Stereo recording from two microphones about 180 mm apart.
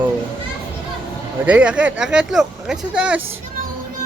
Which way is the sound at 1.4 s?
5° right (ahead or behind).